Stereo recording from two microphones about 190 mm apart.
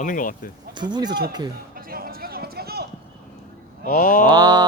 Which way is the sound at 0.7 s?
25° right (ahead or behind).